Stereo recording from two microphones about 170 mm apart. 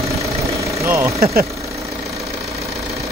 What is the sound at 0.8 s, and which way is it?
Speech, 15° right (ahead or behind).